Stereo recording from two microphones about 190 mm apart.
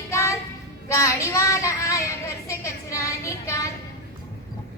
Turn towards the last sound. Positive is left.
turn(degrees=15)  # may be behind; listen again after turning